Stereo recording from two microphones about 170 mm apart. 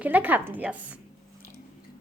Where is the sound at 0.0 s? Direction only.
10° right (ahead or behind).